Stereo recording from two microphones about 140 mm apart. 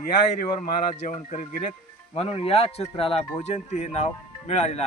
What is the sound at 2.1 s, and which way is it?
Speech, 45° left (ahead or behind).